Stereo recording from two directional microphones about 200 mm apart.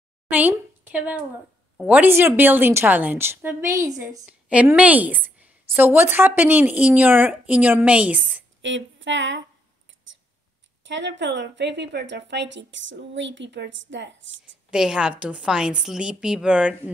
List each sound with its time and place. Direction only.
0.3 s a woman's voice: 10° right (ahead or behind)
8.5 s a woman's voice: 70° right (ahead or behind)
10.8 s a woman's voice: 65° right (ahead or behind)
14.7 s a woman's voice: 5° right (ahead or behind)